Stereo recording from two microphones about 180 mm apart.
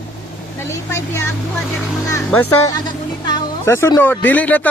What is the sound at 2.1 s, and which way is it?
Speech, 15° left (ahead or behind).